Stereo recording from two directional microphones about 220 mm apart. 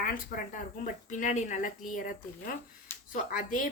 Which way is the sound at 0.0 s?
40° left (ahead or behind).